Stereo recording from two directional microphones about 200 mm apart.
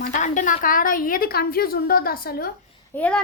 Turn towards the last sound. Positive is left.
turn(degrees=5)  # may be behind; listen again after turning